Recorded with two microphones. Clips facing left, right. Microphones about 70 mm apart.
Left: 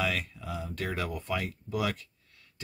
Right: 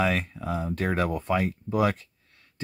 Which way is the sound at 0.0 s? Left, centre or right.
Right.